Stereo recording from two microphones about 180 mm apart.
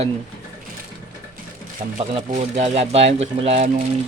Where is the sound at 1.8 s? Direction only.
40° right (ahead or behind).